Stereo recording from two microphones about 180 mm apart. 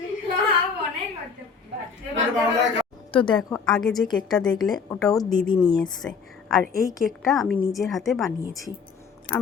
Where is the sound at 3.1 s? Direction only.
25° left (ahead or behind).